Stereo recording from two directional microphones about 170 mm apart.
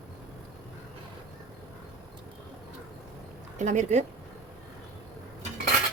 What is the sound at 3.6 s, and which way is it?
Speech, 45° right (ahead or behind).